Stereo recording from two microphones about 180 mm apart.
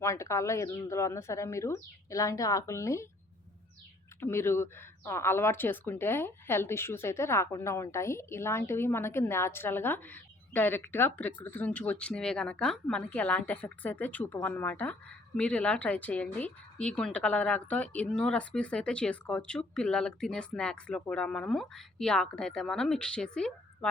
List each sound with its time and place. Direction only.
0.0 s speech: 15° left (ahead or behind)
4.2 s a woman's voice: 15° left (ahead or behind)